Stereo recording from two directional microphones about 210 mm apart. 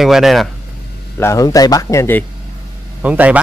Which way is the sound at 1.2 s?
15° left (ahead or behind).